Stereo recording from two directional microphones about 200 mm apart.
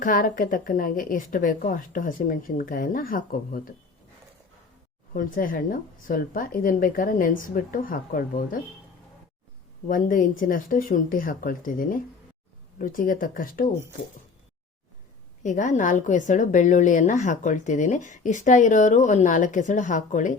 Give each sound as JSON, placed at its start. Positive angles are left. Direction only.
{"t": 0.0, "sound": "speech", "side_deg": 45}
{"t": 5.1, "sound": "speech", "side_deg": 45}
{"t": 9.8, "sound": "speech", "side_deg": 40}
{"t": 15.4, "sound": "a woman's voice", "side_deg": 40}